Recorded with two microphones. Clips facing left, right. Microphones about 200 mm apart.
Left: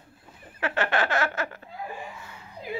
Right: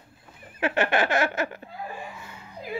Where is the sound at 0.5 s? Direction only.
15° right (ahead or behind).